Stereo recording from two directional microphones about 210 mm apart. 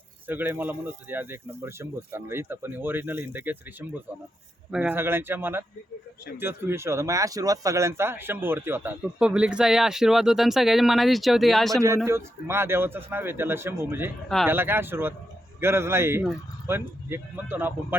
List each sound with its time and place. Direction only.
0.3 s speech: 10° right (ahead or behind)
12.0 s speech: 10° right (ahead or behind)